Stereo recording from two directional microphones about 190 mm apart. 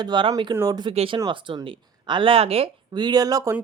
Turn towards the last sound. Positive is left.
turn(degrees=-20)  # may be behind; listen again after turning